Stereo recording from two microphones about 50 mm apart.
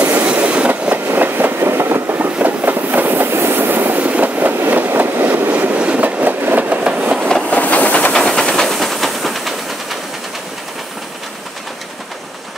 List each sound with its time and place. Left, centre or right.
0.0 s train: right
0.9 s train: right
1.6 s train: right
2.3 s train: right
4.0 s train: right
7.4 s train: left
8.1 s steam: centre